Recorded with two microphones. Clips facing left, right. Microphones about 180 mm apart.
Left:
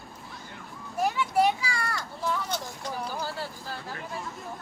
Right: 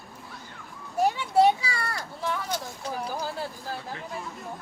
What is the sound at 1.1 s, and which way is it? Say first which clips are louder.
Children playing: right 3 dB; 30° right (ahead or behind).